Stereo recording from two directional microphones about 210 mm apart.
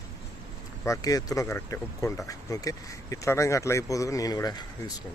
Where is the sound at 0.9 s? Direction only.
15° left (ahead or behind).